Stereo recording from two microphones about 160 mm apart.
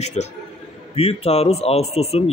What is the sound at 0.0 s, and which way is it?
A man's voice, 45° left (ahead or behind).